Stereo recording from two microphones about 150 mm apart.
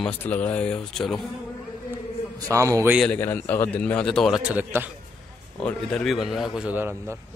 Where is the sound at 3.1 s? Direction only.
15° left (ahead or behind); by 4.9 s 10° right (ahead or behind).